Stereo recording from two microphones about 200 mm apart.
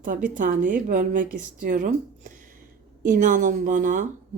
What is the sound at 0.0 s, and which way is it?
Speech, 40° right (ahead or behind).